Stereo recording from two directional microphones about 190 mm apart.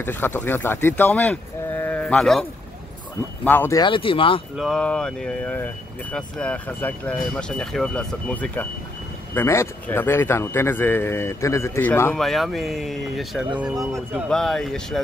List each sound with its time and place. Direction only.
0.0 s speech: 10° left (ahead or behind)
3.4 s speech: 10° left (ahead or behind)
3.8 s speech: 25° left (ahead or behind)
4.6 s speech: 5° left (ahead or behind)